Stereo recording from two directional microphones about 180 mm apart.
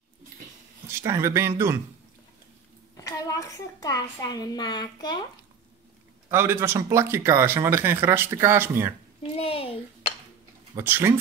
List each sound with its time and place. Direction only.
0.8 s speech: 15° right (ahead or behind)
3.0 s a woman's voice: 20° left (ahead or behind)
6.2 s speech: 15° right (ahead or behind)
9.4 s a child's voice: 30° left (ahead or behind)
10.8 s speech: 10° right (ahead or behind)